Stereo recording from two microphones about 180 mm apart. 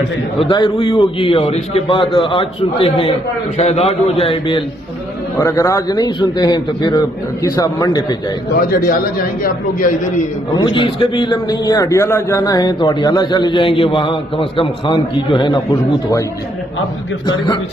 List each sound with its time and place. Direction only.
0.4 s a man's voice: 25° left (ahead or behind)
5.4 s a man's voice: 15° left (ahead or behind)
8.5 s a man's voice: 55° left (ahead or behind)
10.5 s a man's voice: 25° left (ahead or behind)